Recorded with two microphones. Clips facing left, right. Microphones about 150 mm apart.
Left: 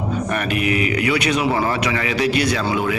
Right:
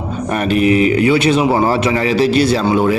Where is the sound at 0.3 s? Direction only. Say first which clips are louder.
Right 10 dB; 30° right (ahead or behind).